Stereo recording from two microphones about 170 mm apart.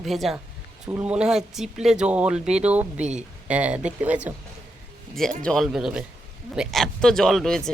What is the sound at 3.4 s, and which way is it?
Speech, 5° right (ahead or behind).